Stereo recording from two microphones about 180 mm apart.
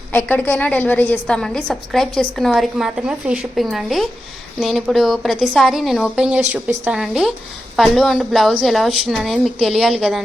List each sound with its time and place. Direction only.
0.1 s a woman's voice: 10° left (ahead or behind)